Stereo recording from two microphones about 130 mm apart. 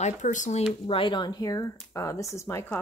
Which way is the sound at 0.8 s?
40° left (ahead or behind).